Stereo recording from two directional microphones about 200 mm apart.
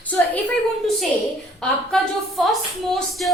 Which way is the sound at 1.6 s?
Centre (ahead or behind).